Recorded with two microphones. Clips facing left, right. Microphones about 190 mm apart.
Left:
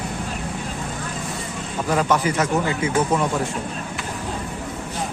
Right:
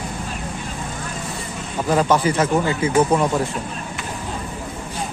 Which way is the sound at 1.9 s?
30° right (ahead or behind).